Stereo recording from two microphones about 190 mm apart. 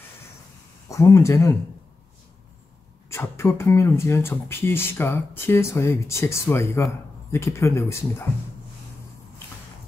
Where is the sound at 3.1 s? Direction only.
15° left (ahead or behind).